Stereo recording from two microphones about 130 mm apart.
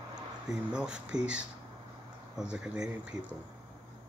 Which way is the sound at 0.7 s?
5° right (ahead or behind).